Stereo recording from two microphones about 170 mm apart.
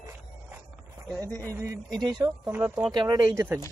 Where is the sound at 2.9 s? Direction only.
25° right (ahead or behind).